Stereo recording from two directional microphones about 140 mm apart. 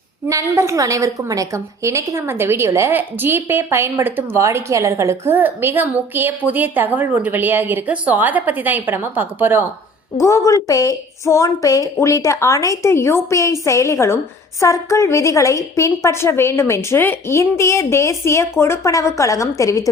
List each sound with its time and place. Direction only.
0.3 s a woman's voice: 20° right (ahead or behind)
10.2 s a woman's voice: 20° left (ahead or behind)